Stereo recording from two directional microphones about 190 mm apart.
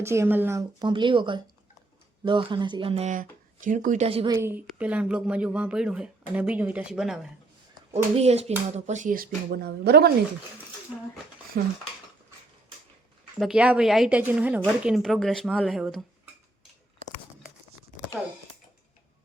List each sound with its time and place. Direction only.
0.0 s speech: 15° right (ahead or behind)
0.8 s speech: 25° right (ahead or behind)
4.3 s speech: 15° right (ahead or behind)
7.9 s speech: 35° right (ahead or behind); by 10.1 s 60° right (ahead or behind)
11.6 s speech: 50° right (ahead or behind)
13.4 s speech: 5° right (ahead or behind)